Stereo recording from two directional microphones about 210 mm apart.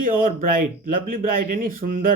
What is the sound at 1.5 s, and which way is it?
Speech, 40° right (ahead or behind).